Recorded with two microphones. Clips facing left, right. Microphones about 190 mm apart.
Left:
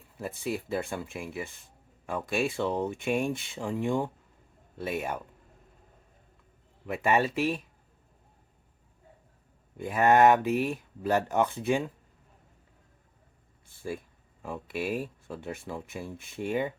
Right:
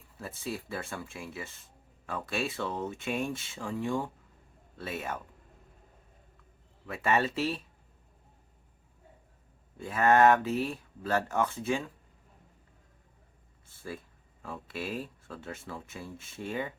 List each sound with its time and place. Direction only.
0.2 s speech: 15° left (ahead or behind)
6.8 s speech: 15° left (ahead or behind)
9.7 s speech: 15° left (ahead or behind)
14.4 s speech: 15° left (ahead or behind)